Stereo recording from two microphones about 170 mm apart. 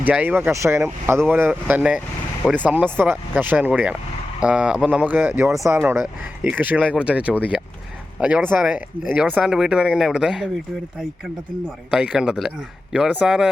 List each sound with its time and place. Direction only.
0.0 s speech: 10° right (ahead or behind)
2.4 s speech: 5° left (ahead or behind)
2.6 s speech: 10° right (ahead or behind)
11.9 s speech: 5° right (ahead or behind)